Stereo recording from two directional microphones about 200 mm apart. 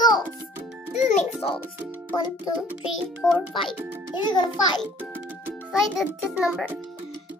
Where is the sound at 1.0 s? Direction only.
35° left (ahead or behind).